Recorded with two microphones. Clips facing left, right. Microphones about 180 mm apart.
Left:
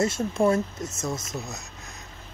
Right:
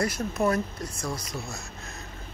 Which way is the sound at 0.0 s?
25° left (ahead or behind).